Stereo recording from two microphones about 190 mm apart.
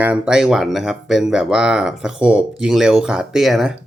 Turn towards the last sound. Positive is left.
turn(degrees=0)  # may be behind; listen again after turning